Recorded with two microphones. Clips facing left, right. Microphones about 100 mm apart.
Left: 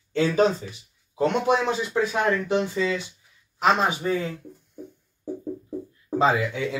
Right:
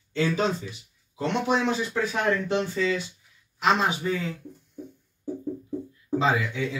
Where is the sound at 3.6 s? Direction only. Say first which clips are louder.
Left 2 dB; 40° left (ahead or behind).